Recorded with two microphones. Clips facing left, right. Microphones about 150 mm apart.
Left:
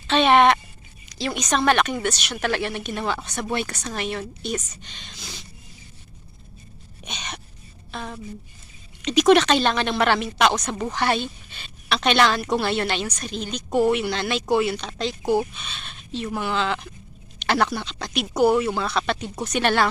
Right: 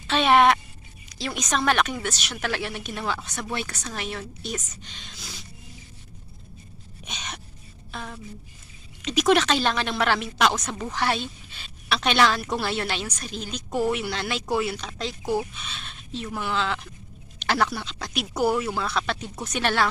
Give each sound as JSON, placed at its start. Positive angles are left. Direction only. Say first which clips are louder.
{"t": 0.1, "sound": "a sound", "louder": "left 2 dB", "side_deg": -5}
{"t": 1.1, "sound": "speech", "louder": "left 3 dB", "side_deg": 0}
{"t": 7.0, "sound": "gasp", "louder": "left 2 dB", "side_deg": 0}
{"t": 7.9, "sound": "speech", "louder": "left 4 dB", "side_deg": 0}
{"t": 13.7, "sound": "speech", "louder": "left 5 dB", "side_deg": 25}
{"t": 13.9, "sound": "speech", "louder": "left 4 dB", "side_deg": -5}